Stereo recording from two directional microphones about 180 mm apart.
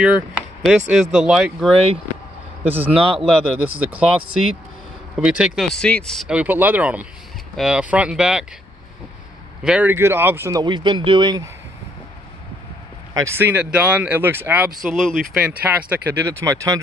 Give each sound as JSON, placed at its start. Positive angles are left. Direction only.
{"t": 0.0, "sound": "speech", "side_deg": -5}
{"t": 5.2, "sound": "speech", "side_deg": -5}
{"t": 5.8, "sound": "speech", "side_deg": 5}
{"t": 9.6, "sound": "speech", "side_deg": -5}
{"t": 10.6, "sound": "speech", "side_deg": -25}
{"t": 13.1, "sound": "speech", "side_deg": -15}
{"t": 14.8, "sound": "speech", "side_deg": 0}